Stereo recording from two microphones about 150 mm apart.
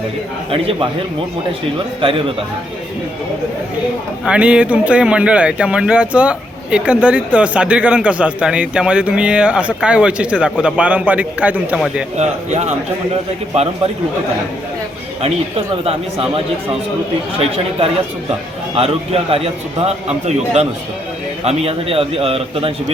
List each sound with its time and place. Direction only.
0.5 s a man's voice: 35° right (ahead or behind)
2.0 s a man's voice: 35° right (ahead or behind)
4.3 s speech: 5° right (ahead or behind)
12.1 s a man's voice: 50° right (ahead or behind)
15.2 s a man's voice: 40° right (ahead or behind)
18.7 s a man's voice: 40° right (ahead or behind)